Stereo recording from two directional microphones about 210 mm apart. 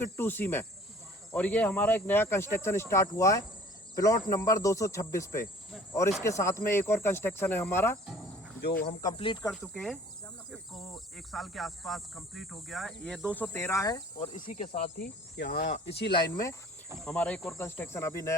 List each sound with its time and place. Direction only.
0.0 s speech: 10° left (ahead or behind)
8.6 s speech: 50° left (ahead or behind)
9.1 s speech: 25° left (ahead or behind)
9.5 s speech: centre (ahead or behind)
14.2 s speech: 40° left (ahead or behind)
16.1 s speech: 15° left (ahead or behind)
17.0 s speech: 5° left (ahead or behind)